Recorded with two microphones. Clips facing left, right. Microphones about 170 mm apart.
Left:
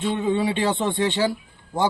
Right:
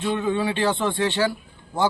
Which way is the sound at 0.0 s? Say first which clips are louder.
Left 1 dB; 20° left (ahead or behind).